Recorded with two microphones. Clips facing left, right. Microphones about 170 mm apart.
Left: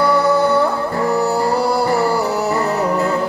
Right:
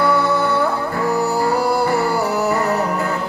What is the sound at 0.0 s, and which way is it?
Music, 30° left (ahead or behind).